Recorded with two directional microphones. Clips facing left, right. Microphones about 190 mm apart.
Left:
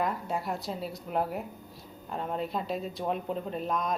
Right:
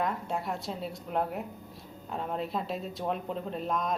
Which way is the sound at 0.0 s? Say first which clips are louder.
Left 1 dB; centre (ahead or behind).